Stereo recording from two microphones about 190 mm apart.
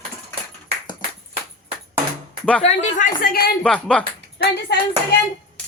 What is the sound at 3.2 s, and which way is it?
Speech, 55° left (ahead or behind).